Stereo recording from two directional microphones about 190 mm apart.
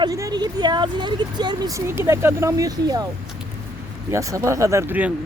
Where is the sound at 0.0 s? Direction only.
20° right (ahead or behind).